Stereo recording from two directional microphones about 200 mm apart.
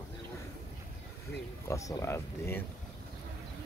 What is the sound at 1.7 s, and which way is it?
Speech, 15° left (ahead or behind).